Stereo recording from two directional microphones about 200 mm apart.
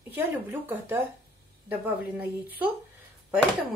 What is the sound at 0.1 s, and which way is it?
A woman's voice, 10° right (ahead or behind).